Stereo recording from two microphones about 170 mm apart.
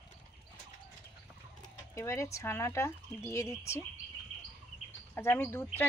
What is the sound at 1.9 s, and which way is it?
Speech, 15° left (ahead or behind).